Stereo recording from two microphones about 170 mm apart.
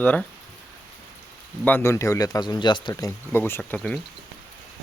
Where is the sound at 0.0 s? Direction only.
10° left (ahead or behind).